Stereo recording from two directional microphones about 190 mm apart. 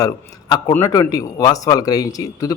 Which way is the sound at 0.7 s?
15° left (ahead or behind).